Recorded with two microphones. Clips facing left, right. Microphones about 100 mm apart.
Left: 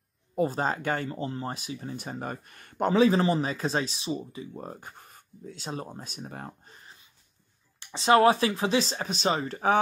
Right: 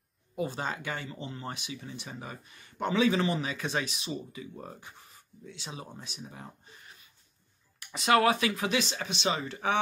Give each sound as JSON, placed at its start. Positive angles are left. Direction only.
{"t": 0.4, "sound": "speech", "side_deg": 40}
{"t": 2.9, "sound": "speech", "side_deg": 40}
{"t": 7.8, "sound": "speech", "side_deg": 30}